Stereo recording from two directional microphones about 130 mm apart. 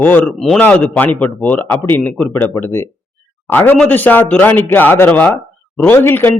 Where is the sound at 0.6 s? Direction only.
10° left (ahead or behind).